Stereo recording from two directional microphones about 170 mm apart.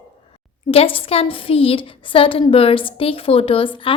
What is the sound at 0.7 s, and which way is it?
A woman's voice, 35° left (ahead or behind).